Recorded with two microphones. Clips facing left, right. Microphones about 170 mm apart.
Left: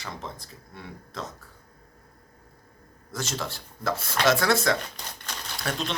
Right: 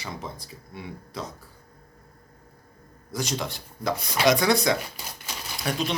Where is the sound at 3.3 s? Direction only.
15° right (ahead or behind).